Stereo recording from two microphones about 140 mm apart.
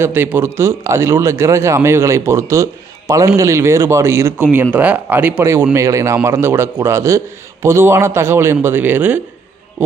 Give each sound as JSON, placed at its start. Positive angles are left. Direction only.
{"t": 0.0, "sound": "a man's voice", "side_deg": -15}